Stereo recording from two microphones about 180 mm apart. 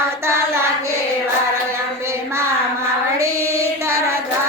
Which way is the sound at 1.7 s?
15° right (ahead or behind).